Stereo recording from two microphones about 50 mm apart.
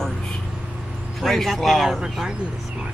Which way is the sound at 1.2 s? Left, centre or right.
Centre.